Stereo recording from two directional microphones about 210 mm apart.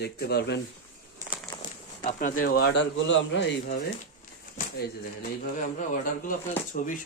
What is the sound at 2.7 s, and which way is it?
Speech, 55° left (ahead or behind).